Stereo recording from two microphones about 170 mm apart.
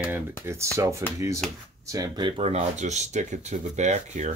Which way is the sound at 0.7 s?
15° right (ahead or behind).